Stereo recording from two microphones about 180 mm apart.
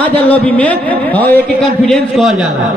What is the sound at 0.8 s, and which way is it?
A man's voice, 10° left (ahead or behind).